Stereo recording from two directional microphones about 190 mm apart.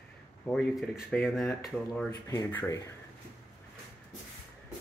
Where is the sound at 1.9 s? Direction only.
15° left (ahead or behind).